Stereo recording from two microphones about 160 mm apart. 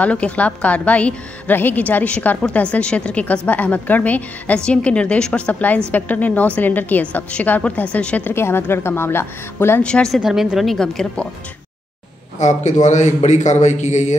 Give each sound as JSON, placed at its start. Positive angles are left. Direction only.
{"t": 0.0, "sound": "a woman's voice", "side_deg": 10}
{"t": 12.4, "sound": "a man's voice", "side_deg": 50}